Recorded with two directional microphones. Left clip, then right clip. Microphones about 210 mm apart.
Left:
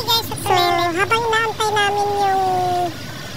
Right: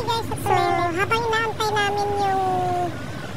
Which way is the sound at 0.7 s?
25° left (ahead or behind).